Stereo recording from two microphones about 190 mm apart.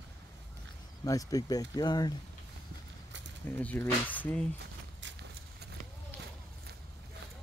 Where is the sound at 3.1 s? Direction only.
70° right (ahead or behind).